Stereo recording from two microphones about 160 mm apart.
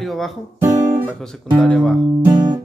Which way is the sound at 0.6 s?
20° right (ahead or behind).